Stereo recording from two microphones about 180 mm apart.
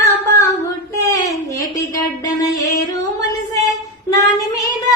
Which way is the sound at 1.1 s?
20° left (ahead or behind).